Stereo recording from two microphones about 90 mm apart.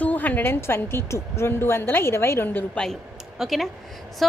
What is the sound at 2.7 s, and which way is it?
Speech, 5° left (ahead or behind).